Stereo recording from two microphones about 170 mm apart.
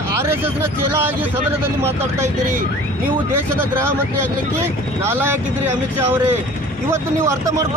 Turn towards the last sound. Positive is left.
turn(degrees=-15)  # may be behind; listen again after turning